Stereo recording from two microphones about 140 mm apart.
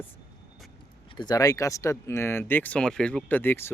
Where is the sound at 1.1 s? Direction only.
30° left (ahead or behind).